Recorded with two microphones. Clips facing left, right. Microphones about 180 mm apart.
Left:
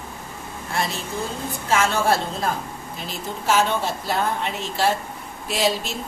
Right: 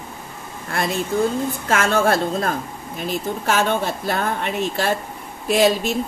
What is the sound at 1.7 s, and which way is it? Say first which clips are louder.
A woman's voice: right 2 dB; 55° right (ahead or behind).